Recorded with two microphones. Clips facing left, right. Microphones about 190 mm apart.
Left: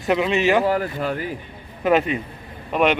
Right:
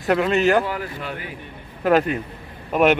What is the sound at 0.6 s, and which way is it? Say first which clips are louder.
Speech: left 7 dB; 40° left (ahead or behind).